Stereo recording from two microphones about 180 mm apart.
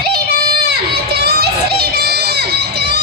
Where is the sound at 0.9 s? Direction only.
60° right (ahead or behind).